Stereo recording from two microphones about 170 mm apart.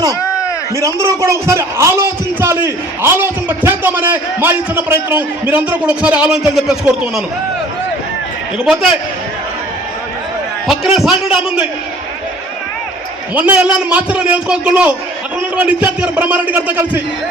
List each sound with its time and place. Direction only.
0.1 s a sound: 15° left (ahead or behind)
0.8 s a man's voice: 15° right (ahead or behind)
8.5 s a man's voice: 5° right (ahead or behind)
10.7 s a man's voice: 5° right (ahead or behind)
13.3 s a man's voice: 10° right (ahead or behind)